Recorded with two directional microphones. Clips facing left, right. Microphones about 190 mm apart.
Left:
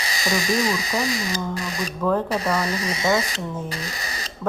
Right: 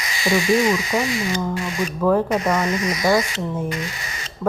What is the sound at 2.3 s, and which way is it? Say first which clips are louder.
Speech: right 3 dB; 35° left (ahead or behind).